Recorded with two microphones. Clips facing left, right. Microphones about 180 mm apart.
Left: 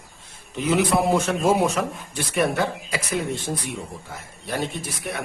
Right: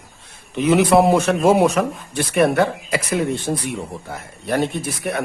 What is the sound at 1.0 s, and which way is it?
Speech, 70° right (ahead or behind).